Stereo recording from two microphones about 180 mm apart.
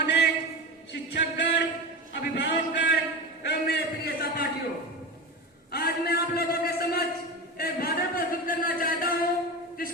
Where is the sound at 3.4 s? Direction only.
65° left (ahead or behind).